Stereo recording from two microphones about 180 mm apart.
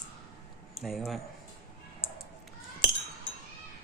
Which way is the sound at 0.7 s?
Centre (ahead or behind).